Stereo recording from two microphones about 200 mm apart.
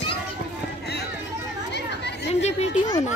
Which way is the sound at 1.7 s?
60° left (ahead or behind).